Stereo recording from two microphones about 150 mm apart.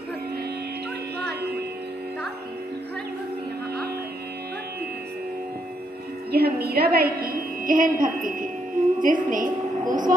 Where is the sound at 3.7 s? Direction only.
90° right.